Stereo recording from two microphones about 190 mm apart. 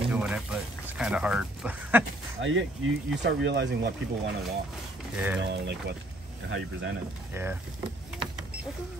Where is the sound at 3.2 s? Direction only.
65° right (ahead or behind).